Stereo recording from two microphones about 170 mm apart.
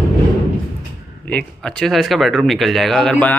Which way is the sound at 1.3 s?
5° left (ahead or behind).